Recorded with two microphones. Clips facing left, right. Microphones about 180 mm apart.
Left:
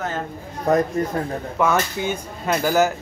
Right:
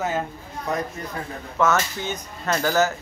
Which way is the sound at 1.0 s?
45° left (ahead or behind).